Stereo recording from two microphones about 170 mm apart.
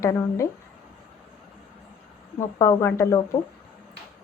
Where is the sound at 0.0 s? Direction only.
20° left (ahead or behind).